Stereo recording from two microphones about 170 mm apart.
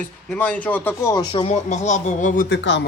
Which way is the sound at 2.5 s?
90° left.